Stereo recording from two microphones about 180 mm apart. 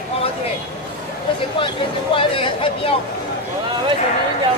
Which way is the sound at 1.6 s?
30° left (ahead or behind).